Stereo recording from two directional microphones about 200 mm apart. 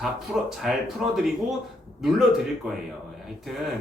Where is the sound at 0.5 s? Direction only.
Centre (ahead or behind).